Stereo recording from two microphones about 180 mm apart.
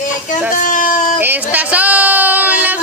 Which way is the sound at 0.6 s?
50° left (ahead or behind).